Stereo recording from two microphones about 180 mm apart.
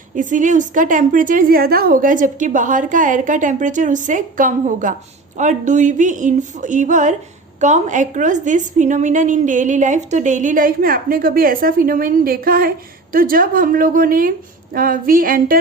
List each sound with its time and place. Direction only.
0.2 s a woman's voice: 45° right (ahead or behind)